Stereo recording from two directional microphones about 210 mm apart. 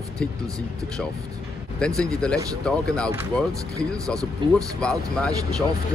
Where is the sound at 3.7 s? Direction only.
15° right (ahead or behind).